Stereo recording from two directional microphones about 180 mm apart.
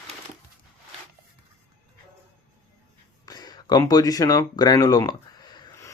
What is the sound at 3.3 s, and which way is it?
Speech, 20° left (ahead or behind).